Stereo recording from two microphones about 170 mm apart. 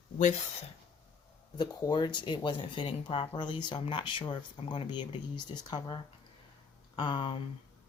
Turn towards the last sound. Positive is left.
turn(degrees=30)  # may be behind; listen again after turning